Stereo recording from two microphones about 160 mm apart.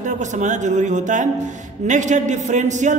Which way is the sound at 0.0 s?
50° right (ahead or behind).